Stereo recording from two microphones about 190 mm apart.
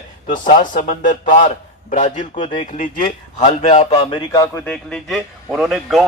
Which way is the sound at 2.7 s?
45° left (ahead or behind).